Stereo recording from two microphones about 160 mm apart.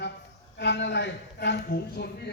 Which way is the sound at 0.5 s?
90° left.